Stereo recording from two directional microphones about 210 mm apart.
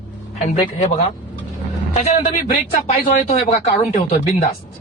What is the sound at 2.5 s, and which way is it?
A man's voice, 40° left (ahead or behind).